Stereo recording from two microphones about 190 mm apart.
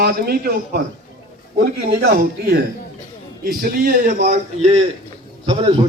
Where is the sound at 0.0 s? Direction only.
55° right (ahead or behind); by 4.9 s 35° right (ahead or behind).